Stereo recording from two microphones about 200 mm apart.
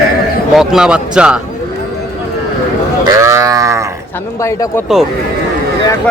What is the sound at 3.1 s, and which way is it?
Livestock, 15° right (ahead or behind).